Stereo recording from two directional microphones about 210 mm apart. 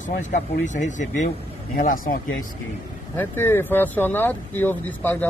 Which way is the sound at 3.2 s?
10° left (ahead or behind).